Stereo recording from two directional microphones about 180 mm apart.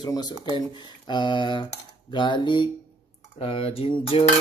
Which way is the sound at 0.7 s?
25° left (ahead or behind).